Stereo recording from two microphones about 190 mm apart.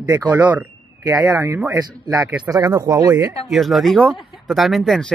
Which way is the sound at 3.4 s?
Centre (ahead or behind).